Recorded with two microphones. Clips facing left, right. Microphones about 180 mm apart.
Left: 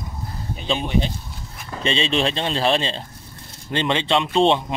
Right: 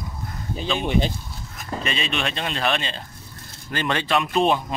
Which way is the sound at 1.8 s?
30° left (ahead or behind).